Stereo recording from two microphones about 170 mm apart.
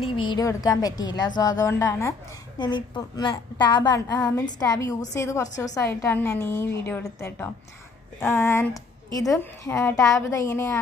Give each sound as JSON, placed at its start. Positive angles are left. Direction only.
{"t": 0.0, "sound": "a woman's voice", "side_deg": 30}